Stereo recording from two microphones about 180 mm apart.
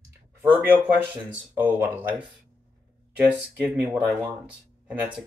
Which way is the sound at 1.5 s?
10° right (ahead or behind).